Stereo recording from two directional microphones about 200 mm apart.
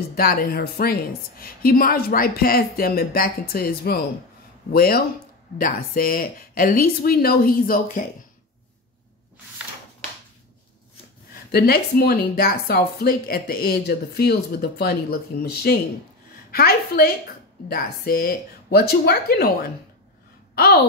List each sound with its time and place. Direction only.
0.1 s speech: 45° left (ahead or behind)
11.5 s a woman's voice: 50° left (ahead or behind)